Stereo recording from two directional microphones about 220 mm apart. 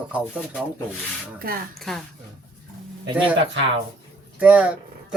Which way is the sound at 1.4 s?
40° right (ahead or behind).